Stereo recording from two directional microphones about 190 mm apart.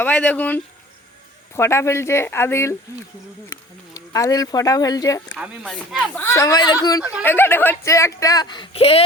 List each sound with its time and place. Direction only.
0.0 s speech: 10° left (ahead or behind)
3.9 s speech: 15° left (ahead or behind)
5.4 s speech: centre (ahead or behind)
6.1 s speech: 10° left (ahead or behind); by 9.0 s 30° left (ahead or behind)